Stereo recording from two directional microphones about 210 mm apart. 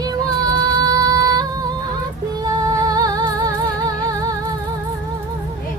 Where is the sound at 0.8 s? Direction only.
15° right (ahead or behind).